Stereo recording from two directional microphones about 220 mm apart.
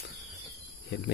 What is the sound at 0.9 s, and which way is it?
Speech, 50° left (ahead or behind).